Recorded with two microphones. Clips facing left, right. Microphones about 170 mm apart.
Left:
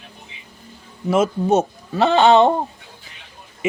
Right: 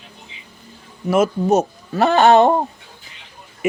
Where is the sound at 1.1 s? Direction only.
30° left (ahead or behind).